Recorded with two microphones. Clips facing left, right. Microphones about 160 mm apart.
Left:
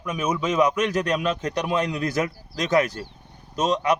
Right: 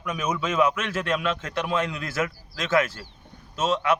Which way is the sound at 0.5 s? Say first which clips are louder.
Left 3 dB; 40° left (ahead or behind).